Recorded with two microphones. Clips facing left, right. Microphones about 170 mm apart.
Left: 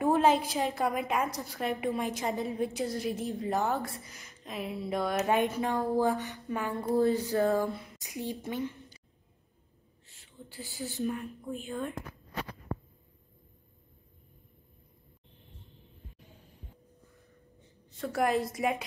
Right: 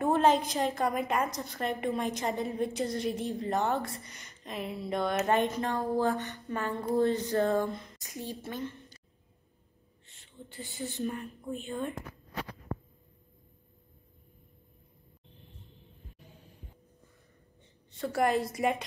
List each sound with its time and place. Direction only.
0.0 s a woman's voice: 5° left (ahead or behind)
6.8 s speech: 5° left (ahead or behind)
10.0 s speech: centre (ahead or behind)
17.9 s a woman's voice: centre (ahead or behind)